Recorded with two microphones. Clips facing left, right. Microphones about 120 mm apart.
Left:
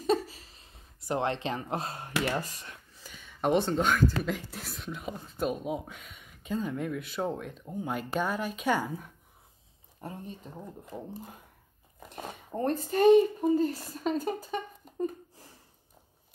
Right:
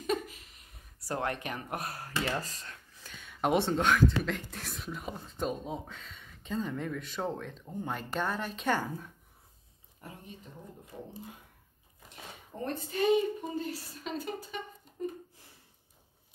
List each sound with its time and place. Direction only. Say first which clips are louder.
0.0 s a sound: left 5 dB; 30° left (ahead or behind); by 3.3 s 10° left (ahead or behind)
3.3 s speech: left 2 dB; 5° right (ahead or behind)
9.9 s speech: left 7 dB; 35° left (ahead or behind)
10.5 s speech: left 6 dB; 55° left (ahead or behind)
12.0 s a sound: left 8 dB; 50° left (ahead or behind)
12.9 s speech: left 7 dB; 45° left (ahead or behind)